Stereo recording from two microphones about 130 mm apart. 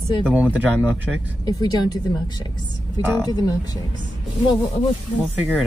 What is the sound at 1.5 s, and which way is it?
Speech, 30° left (ahead or behind).